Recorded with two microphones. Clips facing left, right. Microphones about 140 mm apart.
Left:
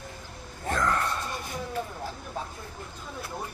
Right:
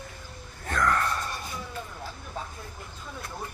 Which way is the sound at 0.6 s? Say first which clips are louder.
Right 1 dB; 20° left (ahead or behind).